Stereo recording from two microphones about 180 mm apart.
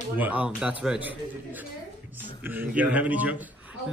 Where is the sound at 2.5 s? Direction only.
10° right (ahead or behind).